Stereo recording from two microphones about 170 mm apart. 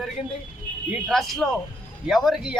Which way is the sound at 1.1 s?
Centre (ahead or behind).